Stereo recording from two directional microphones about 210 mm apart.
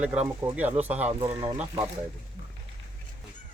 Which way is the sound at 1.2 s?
20° right (ahead or behind).